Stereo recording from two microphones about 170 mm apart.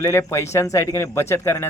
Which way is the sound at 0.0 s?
15° left (ahead or behind).